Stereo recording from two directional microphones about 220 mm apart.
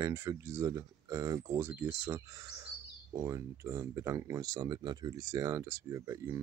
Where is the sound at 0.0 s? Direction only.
15° right (ahead or behind).